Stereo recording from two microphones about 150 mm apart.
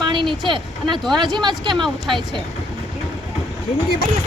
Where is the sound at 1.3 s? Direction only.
30° right (ahead or behind).